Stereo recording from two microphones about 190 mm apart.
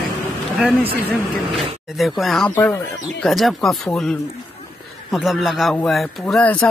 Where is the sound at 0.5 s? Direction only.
5° right (ahead or behind).